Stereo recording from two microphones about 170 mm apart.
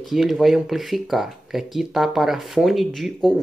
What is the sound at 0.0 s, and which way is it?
Speech, centre (ahead or behind).